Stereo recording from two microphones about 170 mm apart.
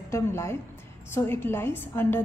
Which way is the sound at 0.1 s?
15° left (ahead or behind).